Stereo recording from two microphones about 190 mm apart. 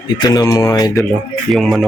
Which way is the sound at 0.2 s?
20° left (ahead or behind).